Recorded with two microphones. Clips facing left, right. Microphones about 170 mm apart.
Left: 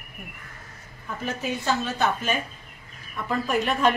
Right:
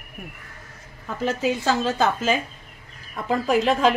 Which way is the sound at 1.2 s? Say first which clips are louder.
Right 6 dB; 90° right.